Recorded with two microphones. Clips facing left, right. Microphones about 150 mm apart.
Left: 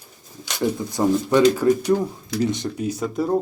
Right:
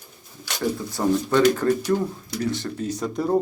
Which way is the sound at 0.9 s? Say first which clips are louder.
Left 2 dB; 20° left (ahead or behind).